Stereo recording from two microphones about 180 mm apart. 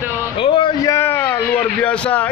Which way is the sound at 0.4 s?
30° left (ahead or behind).